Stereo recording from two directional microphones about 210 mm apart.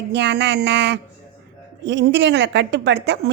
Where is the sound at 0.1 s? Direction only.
55° right (ahead or behind).